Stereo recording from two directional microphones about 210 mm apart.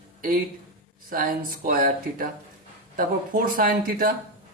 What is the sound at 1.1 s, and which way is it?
A man's voice, 45° right (ahead or behind).